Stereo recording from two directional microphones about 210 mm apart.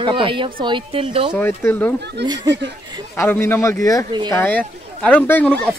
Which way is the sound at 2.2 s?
55° right (ahead or behind).